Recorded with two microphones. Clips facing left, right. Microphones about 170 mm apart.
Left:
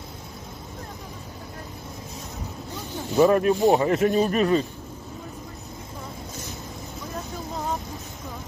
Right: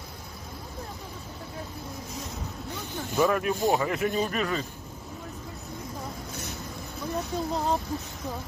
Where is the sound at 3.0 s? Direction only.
20° left (ahead or behind).